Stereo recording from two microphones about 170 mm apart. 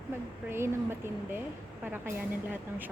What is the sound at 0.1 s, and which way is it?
Speech, 15° right (ahead or behind).